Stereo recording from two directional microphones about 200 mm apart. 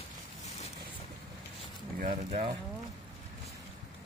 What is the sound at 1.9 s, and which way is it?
Speech, 40° right (ahead or behind).